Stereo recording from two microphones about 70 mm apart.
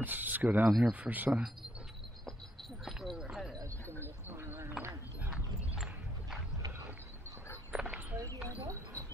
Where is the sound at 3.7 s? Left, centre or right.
Left.